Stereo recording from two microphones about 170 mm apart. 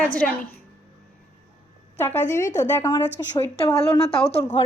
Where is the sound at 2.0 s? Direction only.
15° left (ahead or behind).